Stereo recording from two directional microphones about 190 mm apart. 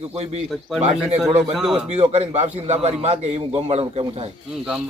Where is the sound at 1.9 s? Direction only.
35° right (ahead or behind).